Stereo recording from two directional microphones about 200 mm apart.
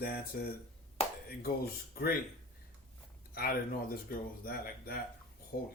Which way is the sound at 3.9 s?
45° left (ahead or behind).